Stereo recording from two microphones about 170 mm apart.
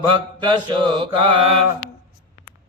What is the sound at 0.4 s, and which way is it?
Mantra, 30° right (ahead or behind).